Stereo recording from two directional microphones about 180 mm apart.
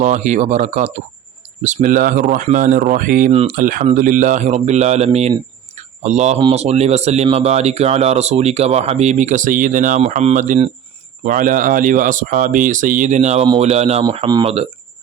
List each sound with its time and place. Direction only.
0.0 s speech: 40° right (ahead or behind)
5.7 s a sound: 40° right (ahead or behind)
6.5 s speech: 35° right (ahead or behind)